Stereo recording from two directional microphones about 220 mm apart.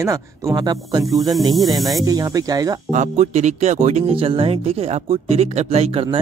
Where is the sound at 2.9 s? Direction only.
35° right (ahead or behind).